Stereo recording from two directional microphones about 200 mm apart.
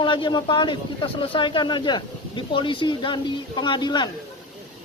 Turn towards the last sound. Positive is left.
turn(degrees=20)  # may be behind; listen again after turning